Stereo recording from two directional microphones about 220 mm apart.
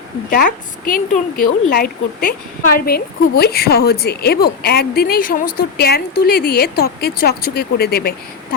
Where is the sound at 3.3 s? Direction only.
45° left (ahead or behind).